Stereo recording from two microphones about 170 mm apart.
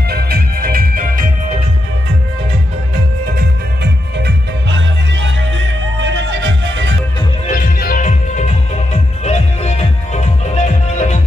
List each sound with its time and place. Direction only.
0.1 s music: 60° right (ahead or behind)
3.3 s music: 80° right
7.4 s music: 55° left (ahead or behind)